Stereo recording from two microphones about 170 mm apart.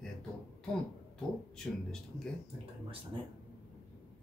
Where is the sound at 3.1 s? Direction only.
30° right (ahead or behind).